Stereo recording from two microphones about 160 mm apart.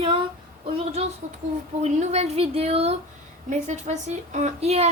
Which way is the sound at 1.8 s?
45° right (ahead or behind).